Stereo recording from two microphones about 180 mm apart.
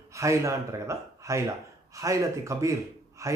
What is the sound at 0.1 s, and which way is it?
A man's voice, 15° right (ahead or behind).